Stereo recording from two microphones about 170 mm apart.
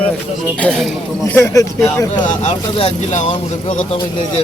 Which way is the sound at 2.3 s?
40° left (ahead or behind).